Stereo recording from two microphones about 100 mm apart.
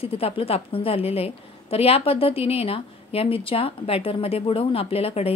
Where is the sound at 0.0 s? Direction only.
75° left (ahead or behind).